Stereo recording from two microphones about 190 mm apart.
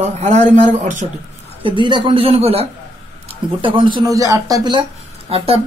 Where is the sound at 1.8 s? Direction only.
25° right (ahead or behind).